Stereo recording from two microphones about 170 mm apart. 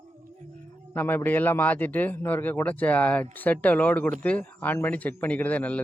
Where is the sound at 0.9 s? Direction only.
10° left (ahead or behind).